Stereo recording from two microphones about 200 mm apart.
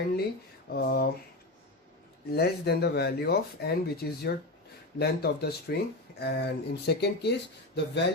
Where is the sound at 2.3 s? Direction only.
55° left (ahead or behind).